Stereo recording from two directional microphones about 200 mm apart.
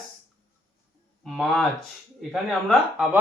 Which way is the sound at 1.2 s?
Centre (ahead or behind).